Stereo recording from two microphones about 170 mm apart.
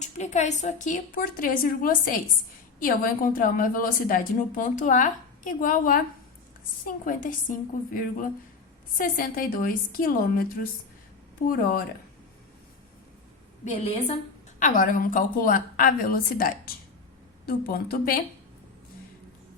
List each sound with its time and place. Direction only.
0.0 s a woman's voice: 45° left (ahead or behind)
9.0 s a woman's voice: 55° left (ahead or behind)
13.7 s a woman's voice: 40° left (ahead or behind)
14.6 s a woman's voice: 50° left (ahead or behind)